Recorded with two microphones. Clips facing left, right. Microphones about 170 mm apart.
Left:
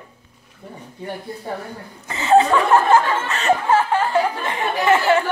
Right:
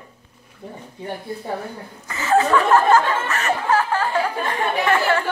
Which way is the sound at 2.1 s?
20° left (ahead or behind).